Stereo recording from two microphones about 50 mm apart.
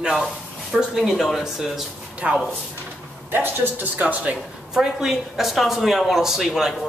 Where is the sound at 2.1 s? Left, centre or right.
Right.